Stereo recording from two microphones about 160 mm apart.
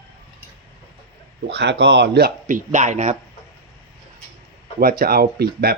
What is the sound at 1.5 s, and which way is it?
Speech, 90° right.